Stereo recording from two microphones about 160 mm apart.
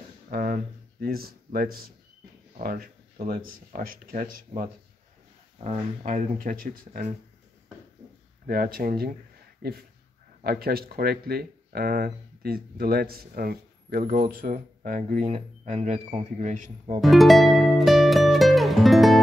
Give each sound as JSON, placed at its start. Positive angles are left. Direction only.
{"t": 0.3, "sound": "a sound", "side_deg": -55}
{"t": 1.0, "sound": "speech", "side_deg": -70}
{"t": 8.5, "sound": "speech", "side_deg": -65}
{"t": 17.0, "sound": "music", "side_deg": 0}